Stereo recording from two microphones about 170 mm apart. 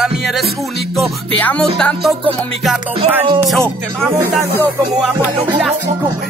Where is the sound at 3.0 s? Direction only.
30° right (ahead or behind).